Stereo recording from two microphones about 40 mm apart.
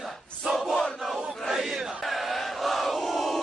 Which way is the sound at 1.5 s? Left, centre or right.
Centre.